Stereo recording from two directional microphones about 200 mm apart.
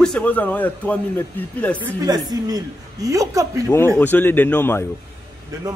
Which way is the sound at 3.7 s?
10° left (ahead or behind).